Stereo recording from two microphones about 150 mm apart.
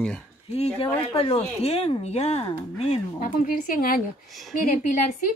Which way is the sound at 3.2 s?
70° left (ahead or behind).